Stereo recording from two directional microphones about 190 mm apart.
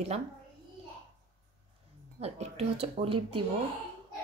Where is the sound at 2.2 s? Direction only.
30° right (ahead or behind).